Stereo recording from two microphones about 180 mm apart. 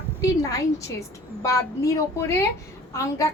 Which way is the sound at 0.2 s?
20° left (ahead or behind).